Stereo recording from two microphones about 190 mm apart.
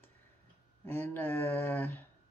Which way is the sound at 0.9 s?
10° left (ahead or behind).